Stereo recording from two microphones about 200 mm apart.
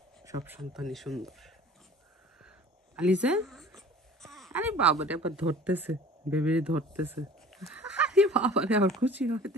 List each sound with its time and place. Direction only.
0.2 s speech: 15° right (ahead or behind)
0.7 s speech: centre (ahead or behind)
3.0 s speech: 5° right (ahead or behind)
4.5 s speech: 10° right (ahead or behind)